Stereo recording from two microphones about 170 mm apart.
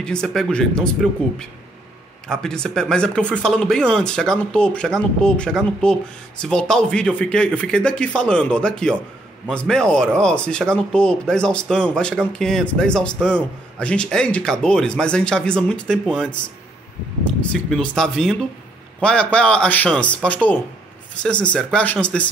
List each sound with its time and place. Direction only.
0.0 s speech: 5° left (ahead or behind)
2.2 s speech: 5° left (ahead or behind)
17.5 s speech: 5° left (ahead or behind)